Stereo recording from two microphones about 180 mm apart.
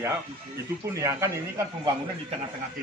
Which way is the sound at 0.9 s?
15° right (ahead or behind).